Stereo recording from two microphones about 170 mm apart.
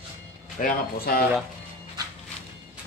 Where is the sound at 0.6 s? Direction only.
60° left (ahead or behind).